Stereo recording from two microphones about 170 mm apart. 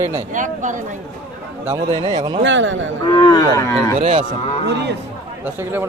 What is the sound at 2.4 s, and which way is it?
Speech, 90° right.